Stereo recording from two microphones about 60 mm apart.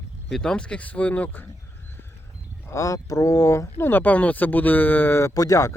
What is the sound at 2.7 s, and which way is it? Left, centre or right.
Speech, left.